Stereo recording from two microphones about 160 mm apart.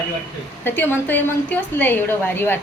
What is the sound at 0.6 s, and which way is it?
A woman's voice, 10° left (ahead or behind).